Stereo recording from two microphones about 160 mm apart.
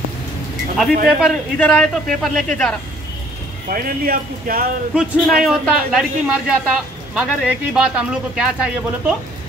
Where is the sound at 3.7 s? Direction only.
65° right (ahead or behind).